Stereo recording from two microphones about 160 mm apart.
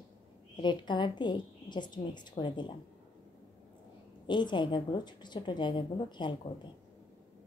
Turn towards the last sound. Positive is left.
turn(degrees=30)  # may be behind; listen again after turning